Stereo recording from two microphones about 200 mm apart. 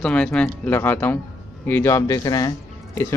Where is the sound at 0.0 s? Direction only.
5° left (ahead or behind).